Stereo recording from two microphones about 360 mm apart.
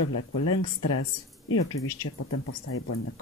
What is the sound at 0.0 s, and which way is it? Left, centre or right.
Speech, left.